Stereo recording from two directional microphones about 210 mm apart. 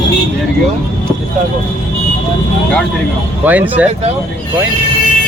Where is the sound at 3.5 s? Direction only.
10° right (ahead or behind).